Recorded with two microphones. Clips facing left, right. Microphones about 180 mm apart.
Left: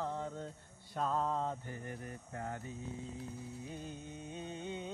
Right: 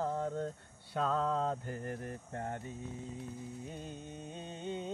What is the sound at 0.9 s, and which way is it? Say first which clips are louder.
Mantra: right 3 dB; 90° right.